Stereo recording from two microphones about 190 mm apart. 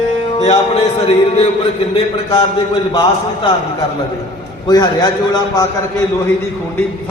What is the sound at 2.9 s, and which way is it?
Speech, 30° left (ahead or behind).